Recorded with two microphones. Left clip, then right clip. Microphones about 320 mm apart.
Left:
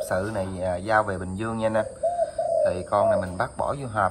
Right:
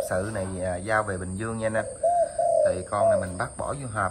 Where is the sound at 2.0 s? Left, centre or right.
Right.